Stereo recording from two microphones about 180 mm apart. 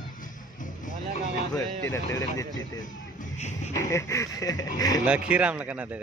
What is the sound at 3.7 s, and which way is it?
Speech, 15° left (ahead or behind).